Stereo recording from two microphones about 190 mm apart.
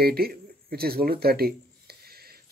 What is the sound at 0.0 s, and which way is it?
A man's voice, 55° right (ahead or behind).